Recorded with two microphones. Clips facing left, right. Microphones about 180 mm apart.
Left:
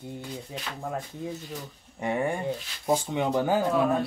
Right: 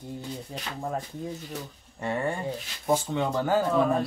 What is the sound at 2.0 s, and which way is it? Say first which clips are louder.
Speech: left 1 dB; 15° left (ahead or behind).